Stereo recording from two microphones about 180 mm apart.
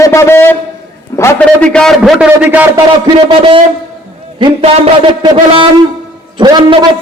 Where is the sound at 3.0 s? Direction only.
30° right (ahead or behind).